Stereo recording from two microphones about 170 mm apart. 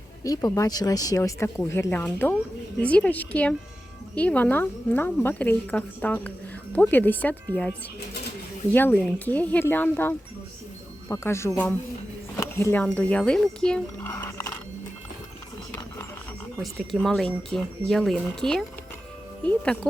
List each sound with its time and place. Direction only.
0.3 s a woman's voice: 20° left (ahead or behind)
12.4 s a sound: 15° left (ahead or behind)
13.0 s speech: 5° left (ahead or behind)
16.8 s a woman's voice: centre (ahead or behind)